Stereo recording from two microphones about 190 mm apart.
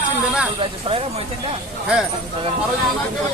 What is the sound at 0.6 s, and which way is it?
Speech, 30° right (ahead or behind).